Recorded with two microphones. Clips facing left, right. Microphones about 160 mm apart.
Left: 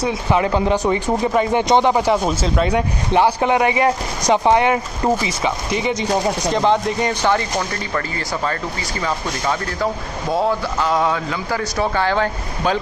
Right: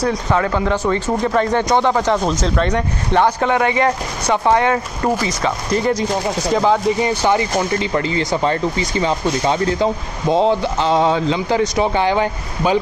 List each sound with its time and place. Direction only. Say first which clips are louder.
0.3 s speech: left 3 dB; 20° left (ahead or behind)
5.4 s speech: right 2 dB; 5° left (ahead or behind); by 12.7 s 15° right (ahead or behind)